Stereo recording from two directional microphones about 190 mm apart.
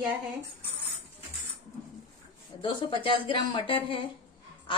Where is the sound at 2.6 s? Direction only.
25° left (ahead or behind).